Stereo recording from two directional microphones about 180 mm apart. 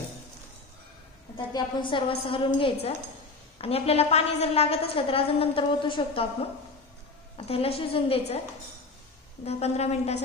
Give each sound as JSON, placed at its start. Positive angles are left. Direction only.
{"t": 1.3, "sound": "a woman's voice", "side_deg": 30}
{"t": 7.3, "sound": "a woman's voice", "side_deg": 35}
{"t": 9.4, "sound": "a woman's voice", "side_deg": 35}